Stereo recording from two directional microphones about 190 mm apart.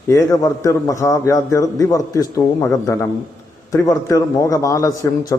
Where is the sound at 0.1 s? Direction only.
15° left (ahead or behind).